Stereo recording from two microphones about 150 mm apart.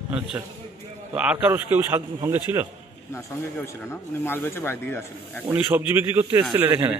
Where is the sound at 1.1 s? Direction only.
5° right (ahead or behind).